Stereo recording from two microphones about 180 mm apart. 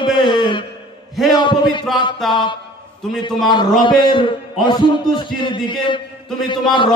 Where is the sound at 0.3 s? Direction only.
25° left (ahead or behind).